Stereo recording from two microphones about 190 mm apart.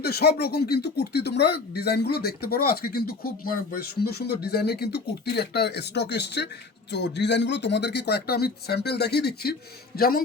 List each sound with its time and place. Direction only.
0.0 s a man's voice: 55° left (ahead or behind)